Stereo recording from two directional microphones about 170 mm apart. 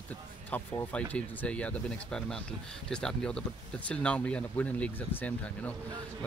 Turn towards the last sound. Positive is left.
turn(degrees=10)  # may be behind; listen again after turning